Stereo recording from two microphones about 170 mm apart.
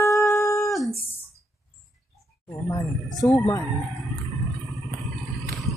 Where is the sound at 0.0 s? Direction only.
15° left (ahead or behind).